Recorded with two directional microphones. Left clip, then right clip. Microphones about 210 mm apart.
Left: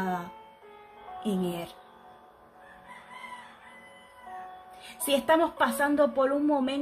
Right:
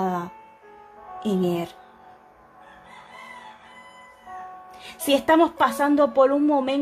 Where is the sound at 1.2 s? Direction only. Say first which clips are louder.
Right 8 dB; 35° right (ahead or behind).